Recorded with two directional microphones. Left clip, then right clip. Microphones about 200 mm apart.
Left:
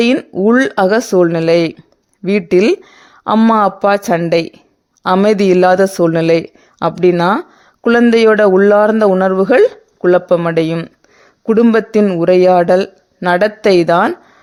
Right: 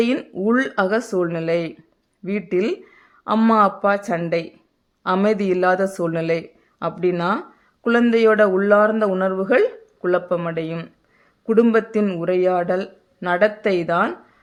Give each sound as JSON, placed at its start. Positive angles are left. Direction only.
{"t": 0.2, "sound": "speech", "side_deg": 35}